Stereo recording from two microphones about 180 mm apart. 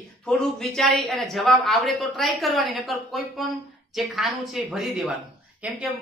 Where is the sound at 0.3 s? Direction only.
5° left (ahead or behind).